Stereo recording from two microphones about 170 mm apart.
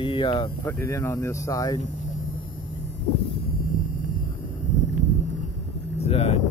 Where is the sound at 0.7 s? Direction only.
15° left (ahead or behind).